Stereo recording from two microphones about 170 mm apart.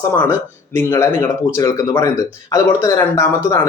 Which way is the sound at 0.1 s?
10° left (ahead or behind).